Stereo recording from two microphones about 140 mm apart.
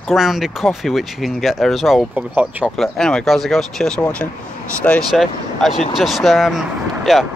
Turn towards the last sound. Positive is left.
turn(degrees=0)  # may be behind; listen again after turning